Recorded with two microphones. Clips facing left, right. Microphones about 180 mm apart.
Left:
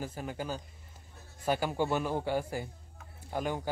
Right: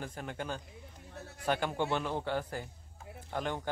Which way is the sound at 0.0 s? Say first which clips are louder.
Left 2 dB; 5° left (ahead or behind).